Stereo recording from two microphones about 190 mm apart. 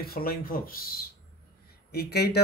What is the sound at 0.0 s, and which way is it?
Speech, 50° left (ahead or behind).